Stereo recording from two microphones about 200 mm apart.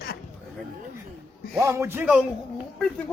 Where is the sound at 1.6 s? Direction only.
15° right (ahead or behind).